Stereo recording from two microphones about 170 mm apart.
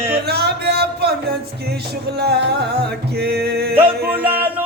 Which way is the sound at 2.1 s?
75° right (ahead or behind).